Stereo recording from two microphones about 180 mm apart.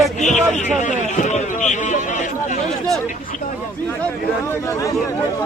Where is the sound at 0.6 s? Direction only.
40° left (ahead or behind).